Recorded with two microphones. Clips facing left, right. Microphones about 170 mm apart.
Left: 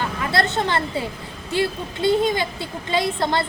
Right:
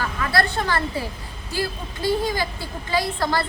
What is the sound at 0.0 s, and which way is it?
A woman's voice, 25° left (ahead or behind).